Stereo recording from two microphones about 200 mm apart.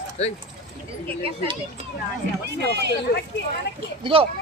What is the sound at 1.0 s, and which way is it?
Speech, 30° right (ahead or behind).